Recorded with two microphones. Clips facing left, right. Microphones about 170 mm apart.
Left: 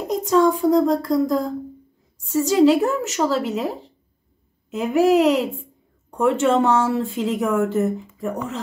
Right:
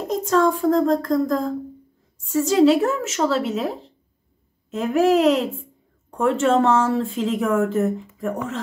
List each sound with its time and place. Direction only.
0.0 s a woman's voice: 10° left (ahead or behind)